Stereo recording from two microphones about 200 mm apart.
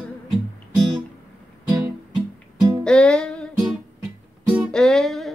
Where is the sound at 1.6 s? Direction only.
20° right (ahead or behind).